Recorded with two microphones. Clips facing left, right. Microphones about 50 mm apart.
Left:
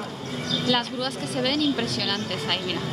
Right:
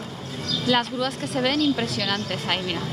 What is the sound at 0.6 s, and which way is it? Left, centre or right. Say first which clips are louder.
A woman's voice: right 4 dB; centre.